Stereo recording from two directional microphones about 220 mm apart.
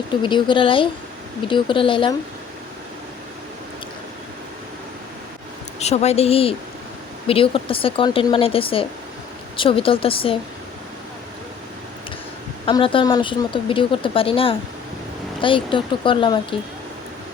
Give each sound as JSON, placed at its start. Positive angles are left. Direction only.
{"t": 0.1, "sound": "speech", "side_deg": 20}
{"t": 5.8, "sound": "speech", "side_deg": 30}
{"t": 12.6, "sound": "speech", "side_deg": 25}